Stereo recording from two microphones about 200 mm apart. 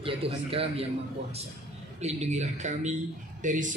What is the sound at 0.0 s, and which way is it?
Speech, 25° right (ahead or behind).